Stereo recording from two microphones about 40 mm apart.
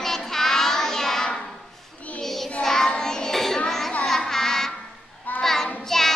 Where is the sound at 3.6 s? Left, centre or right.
Centre.